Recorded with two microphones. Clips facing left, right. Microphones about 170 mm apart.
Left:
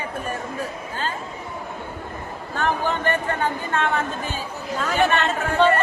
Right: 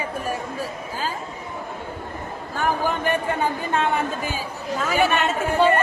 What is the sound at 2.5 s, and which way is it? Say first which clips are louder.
A woman's voice: even; 10° right (ahead or behind).